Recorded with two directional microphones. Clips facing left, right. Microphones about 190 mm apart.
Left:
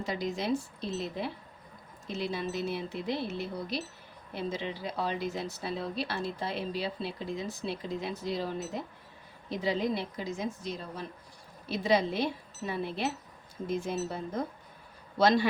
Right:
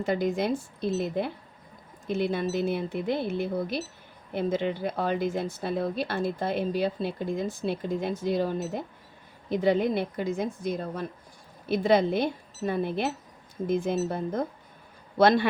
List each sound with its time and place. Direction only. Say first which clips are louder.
0.0 s a woman's voice: right 7 dB; 55° right (ahead or behind)